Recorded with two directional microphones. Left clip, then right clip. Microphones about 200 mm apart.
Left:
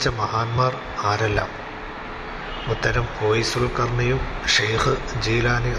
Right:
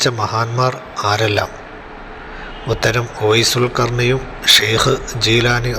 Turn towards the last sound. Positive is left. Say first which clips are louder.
# right 7 dB
turn(degrees=-20)  # may be behind; listen again after turning